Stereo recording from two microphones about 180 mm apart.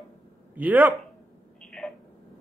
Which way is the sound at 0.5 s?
10° right (ahead or behind).